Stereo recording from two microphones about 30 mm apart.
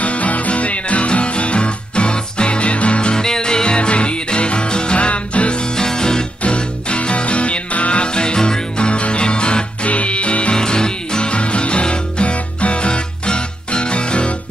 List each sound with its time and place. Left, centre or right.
0.0 s music: left
3.2 s music: left
4.9 s music: left
5.6 s music: left
6.4 s music: left
8.0 s music: left
9.8 s music: left
10.5 s music: left